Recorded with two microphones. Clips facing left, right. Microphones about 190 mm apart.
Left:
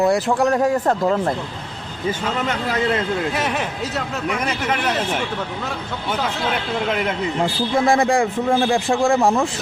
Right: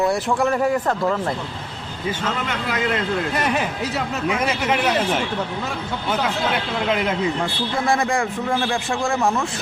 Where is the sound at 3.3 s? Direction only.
Centre (ahead or behind).